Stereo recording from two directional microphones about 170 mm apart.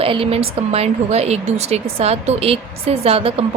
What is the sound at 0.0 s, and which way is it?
Speech, 35° right (ahead or behind).